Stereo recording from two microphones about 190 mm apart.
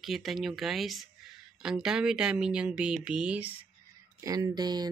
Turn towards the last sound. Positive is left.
turn(degrees=-20)  # may be behind; listen again after turning